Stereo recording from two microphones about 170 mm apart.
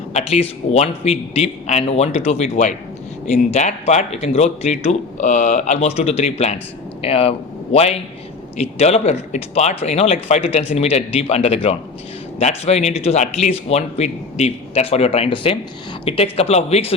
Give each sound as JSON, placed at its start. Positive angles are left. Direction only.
{"t": 0.1, "sound": "speech", "side_deg": 40}